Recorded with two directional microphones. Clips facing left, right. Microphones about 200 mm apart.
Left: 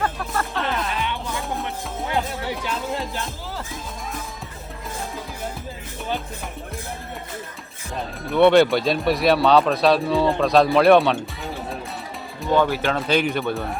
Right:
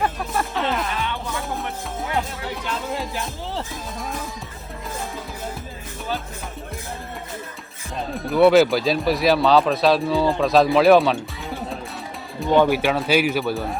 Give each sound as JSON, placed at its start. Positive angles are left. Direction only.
{"t": 0.0, "sound": "music", "side_deg": -15}
{"t": 8.1, "sound": "speech", "side_deg": 0}
{"t": 12.5, "sound": "speech", "side_deg": -15}